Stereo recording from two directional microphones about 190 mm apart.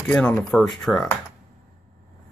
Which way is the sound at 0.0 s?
5° left (ahead or behind).